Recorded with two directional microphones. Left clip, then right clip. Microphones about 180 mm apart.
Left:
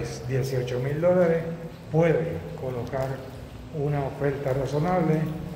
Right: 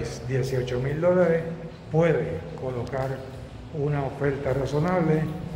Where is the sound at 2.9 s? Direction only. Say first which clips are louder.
Even; 15° right (ahead or behind).